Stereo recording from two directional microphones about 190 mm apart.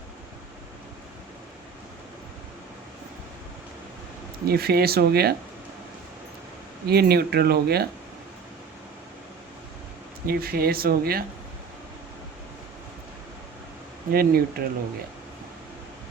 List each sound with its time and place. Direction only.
4.4 s speech: 55° right (ahead or behind)
6.8 s speech: 55° right (ahead or behind)
10.2 s speech: 55° right (ahead or behind)
14.1 s speech: 50° right (ahead or behind)